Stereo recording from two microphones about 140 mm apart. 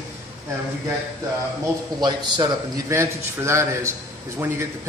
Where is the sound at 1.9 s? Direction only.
30° right (ahead or behind).